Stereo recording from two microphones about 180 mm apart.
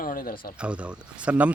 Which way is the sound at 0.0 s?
55° left (ahead or behind).